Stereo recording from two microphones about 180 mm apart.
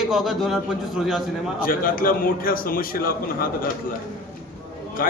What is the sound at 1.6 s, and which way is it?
A man's voice, 50° left (ahead or behind).